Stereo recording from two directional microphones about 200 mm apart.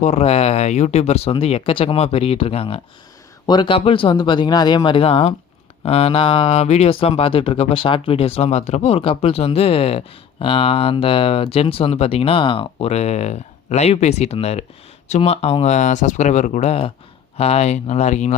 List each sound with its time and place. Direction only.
0.0 s speech: 35° left (ahead or behind)